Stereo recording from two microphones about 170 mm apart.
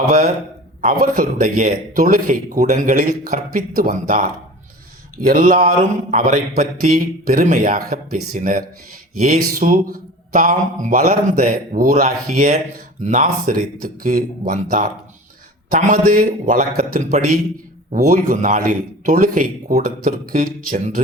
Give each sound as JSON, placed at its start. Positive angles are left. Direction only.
{"t": 0.8, "sound": "a man's voice", "side_deg": -55}